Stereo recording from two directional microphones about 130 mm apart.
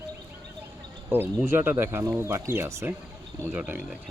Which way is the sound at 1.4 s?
15° right (ahead or behind).